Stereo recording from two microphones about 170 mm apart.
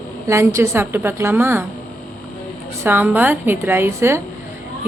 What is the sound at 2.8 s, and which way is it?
A woman's voice, 10° right (ahead or behind).